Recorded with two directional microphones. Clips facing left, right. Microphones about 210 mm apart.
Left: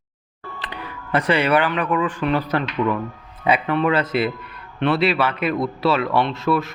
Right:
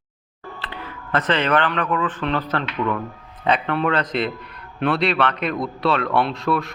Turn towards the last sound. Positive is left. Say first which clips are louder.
# left 1 dB
turn(degrees=0)  # may be behind; listen again after turning